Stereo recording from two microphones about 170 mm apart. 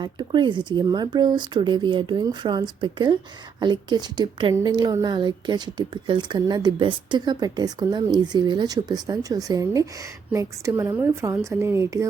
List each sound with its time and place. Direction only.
0.0 s a woman's voice: 25° right (ahead or behind)